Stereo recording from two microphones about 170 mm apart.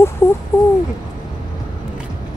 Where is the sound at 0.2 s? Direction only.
15° left (ahead or behind).